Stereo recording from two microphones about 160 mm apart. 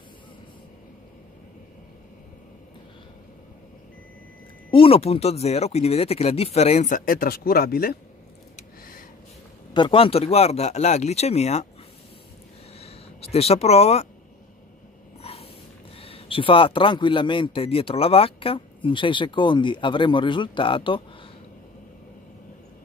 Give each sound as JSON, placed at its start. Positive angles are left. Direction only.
{"t": 4.6, "sound": "a man's voice", "side_deg": 35}
{"t": 9.8, "sound": "a man's voice", "side_deg": 35}
{"t": 12.7, "sound": "a sound", "side_deg": 40}
{"t": 15.2, "sound": "snort", "side_deg": 40}
{"t": 16.0, "sound": "a man's voice", "side_deg": 35}